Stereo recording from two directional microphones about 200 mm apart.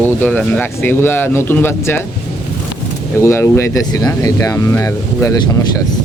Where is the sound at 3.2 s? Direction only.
15° left (ahead or behind).